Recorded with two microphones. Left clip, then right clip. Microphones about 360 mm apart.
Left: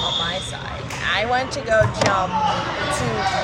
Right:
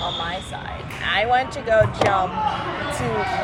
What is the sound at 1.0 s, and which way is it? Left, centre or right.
Speech, centre.